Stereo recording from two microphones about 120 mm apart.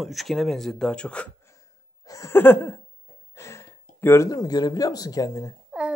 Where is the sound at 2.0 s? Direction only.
25° left (ahead or behind).